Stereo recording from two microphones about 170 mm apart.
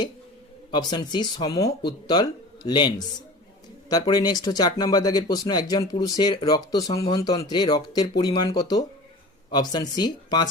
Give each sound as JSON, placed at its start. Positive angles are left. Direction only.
{"t": 0.7, "sound": "speech", "side_deg": 25}
{"t": 6.9, "sound": "speech", "side_deg": 35}
{"t": 7.2, "sound": "speech", "side_deg": 20}